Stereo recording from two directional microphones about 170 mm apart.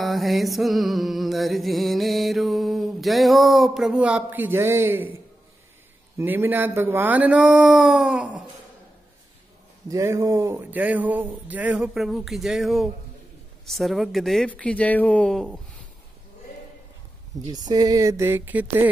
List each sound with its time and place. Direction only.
0.0 s music: centre (ahead or behind)
6.1 s speech: 15° right (ahead or behind)
9.8 s speech: 20° right (ahead or behind); by 12.9 s centre (ahead or behind)
13.7 s music: centre (ahead or behind)
17.5 s speech: 25° right (ahead or behind)